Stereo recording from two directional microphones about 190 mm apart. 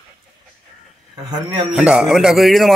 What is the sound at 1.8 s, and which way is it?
Speech, 5° right (ahead or behind).